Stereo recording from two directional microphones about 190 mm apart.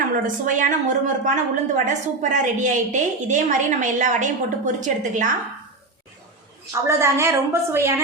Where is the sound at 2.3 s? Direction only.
40° right (ahead or behind).